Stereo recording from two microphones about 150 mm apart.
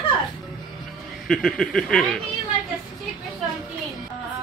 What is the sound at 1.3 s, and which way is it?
Speech, 5° left (ahead or behind).